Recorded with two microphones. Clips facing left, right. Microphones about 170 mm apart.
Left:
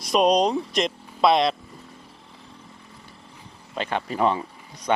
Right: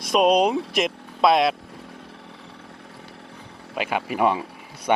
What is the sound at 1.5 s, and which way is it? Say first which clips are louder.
Motorcycle: right 4 dB; 70° right (ahead or behind).